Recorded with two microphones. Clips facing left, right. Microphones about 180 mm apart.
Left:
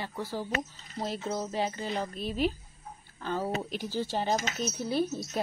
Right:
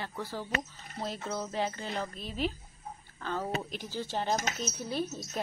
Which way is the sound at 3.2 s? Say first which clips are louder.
Left 2 dB; 10° left (ahead or behind).